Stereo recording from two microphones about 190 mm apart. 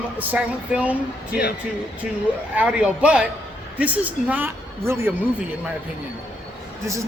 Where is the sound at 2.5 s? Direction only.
5° right (ahead or behind).